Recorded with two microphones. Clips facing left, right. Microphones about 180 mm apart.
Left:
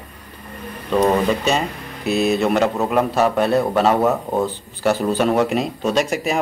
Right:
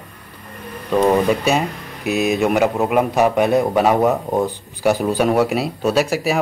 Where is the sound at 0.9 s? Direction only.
10° right (ahead or behind).